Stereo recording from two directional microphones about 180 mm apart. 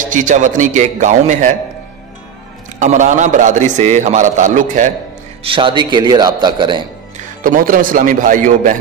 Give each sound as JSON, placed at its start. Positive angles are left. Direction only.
{"t": 0.0, "sound": "a man's voice", "side_deg": -45}
{"t": 2.8, "sound": "a man's voice", "side_deg": -40}
{"t": 5.4, "sound": "a man's voice", "side_deg": -30}
{"t": 7.2, "sound": "a man's voice", "side_deg": -50}